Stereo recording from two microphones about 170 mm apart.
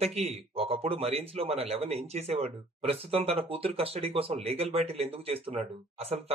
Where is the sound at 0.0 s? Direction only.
35° right (ahead or behind).